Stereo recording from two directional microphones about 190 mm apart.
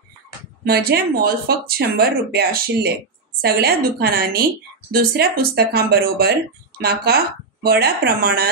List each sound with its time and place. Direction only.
0.7 s a woman's voice: 55° right (ahead or behind)